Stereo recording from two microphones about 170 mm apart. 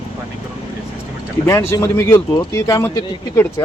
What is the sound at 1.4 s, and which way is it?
Speech, 15° left (ahead or behind).